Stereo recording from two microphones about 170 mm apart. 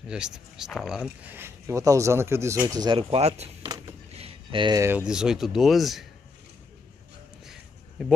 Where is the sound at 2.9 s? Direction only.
35° right (ahead or behind).